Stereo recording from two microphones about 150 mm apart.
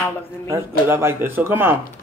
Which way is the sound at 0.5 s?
15° right (ahead or behind).